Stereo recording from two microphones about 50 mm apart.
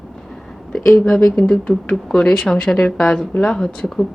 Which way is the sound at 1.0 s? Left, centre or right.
Centre.